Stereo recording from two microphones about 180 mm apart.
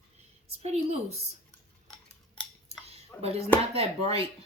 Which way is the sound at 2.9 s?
35° right (ahead or behind).